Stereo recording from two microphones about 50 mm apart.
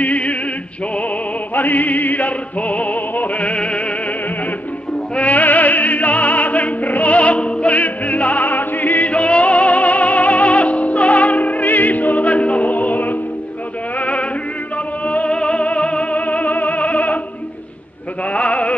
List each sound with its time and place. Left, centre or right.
0.0 s music: left
1.5 s music: left
5.1 s opera: left
13.9 s music: left
18.3 s music: left